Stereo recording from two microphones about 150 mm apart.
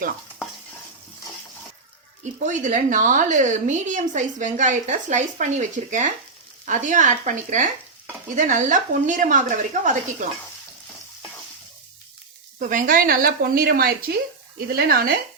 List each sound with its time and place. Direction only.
2.2 s a woman's voice: 55° right (ahead or behind)
12.5 s a woman's voice: 60° right (ahead or behind); by 15.1 s 90° right